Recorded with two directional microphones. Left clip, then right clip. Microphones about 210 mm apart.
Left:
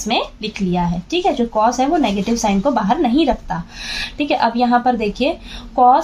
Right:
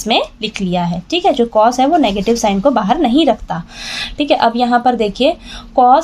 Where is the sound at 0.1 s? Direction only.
45° right (ahead or behind).